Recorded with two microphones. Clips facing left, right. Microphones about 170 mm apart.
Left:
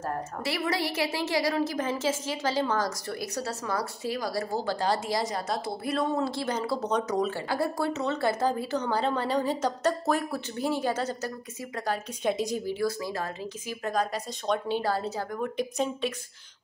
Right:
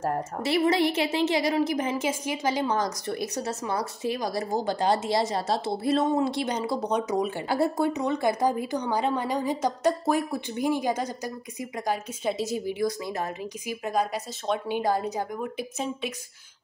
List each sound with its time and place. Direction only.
0.0 s a woman's voice: 25° right (ahead or behind)
15.4 s speech: 5° right (ahead or behind)